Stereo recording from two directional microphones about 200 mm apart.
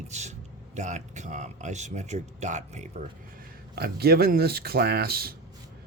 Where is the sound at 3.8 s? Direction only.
50° right (ahead or behind).